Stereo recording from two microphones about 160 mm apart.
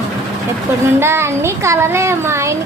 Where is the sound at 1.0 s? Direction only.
15° right (ahead or behind).